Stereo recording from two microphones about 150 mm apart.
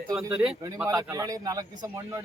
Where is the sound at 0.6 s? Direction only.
20° right (ahead or behind).